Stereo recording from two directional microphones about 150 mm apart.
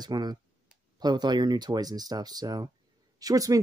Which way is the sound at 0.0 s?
25° right (ahead or behind).